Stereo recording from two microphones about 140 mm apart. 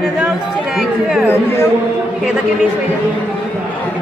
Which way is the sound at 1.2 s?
20° left (ahead or behind).